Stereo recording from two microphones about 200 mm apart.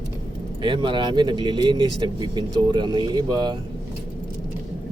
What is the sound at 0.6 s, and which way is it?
Speech, 25° right (ahead or behind).